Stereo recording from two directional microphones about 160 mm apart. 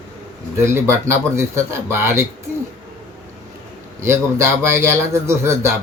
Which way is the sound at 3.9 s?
15° right (ahead or behind).